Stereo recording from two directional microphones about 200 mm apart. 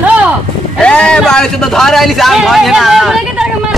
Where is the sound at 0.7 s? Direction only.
5° left (ahead or behind).